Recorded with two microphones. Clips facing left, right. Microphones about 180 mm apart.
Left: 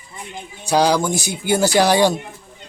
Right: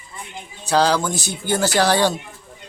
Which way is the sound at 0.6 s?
15° left (ahead or behind).